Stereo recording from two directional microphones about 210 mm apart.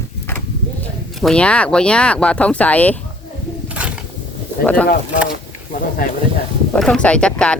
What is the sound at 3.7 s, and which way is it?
Roaring cats, 5° right (ahead or behind).